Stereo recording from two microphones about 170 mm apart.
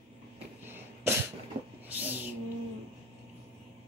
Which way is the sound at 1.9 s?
10° right (ahead or behind).